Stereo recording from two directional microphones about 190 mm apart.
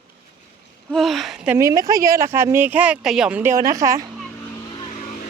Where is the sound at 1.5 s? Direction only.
15° right (ahead or behind).